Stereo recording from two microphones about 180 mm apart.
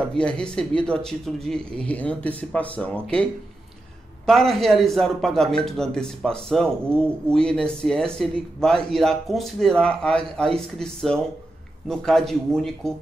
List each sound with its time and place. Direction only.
0.1 s speech: 5° left (ahead or behind)
4.3 s speech: centre (ahead or behind)